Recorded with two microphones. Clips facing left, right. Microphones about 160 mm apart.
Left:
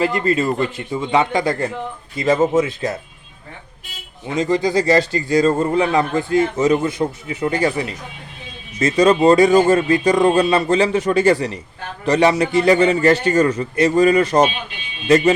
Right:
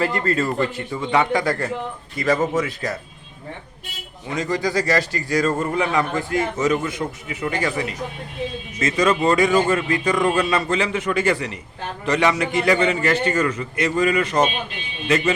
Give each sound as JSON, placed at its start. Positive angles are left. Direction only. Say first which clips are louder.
{"t": 0.0, "sound": "a man's voice", "louder": "left 3 dB", "side_deg": 15}
{"t": 4.3, "sound": "a man's voice", "louder": "left 5 dB", "side_deg": 25}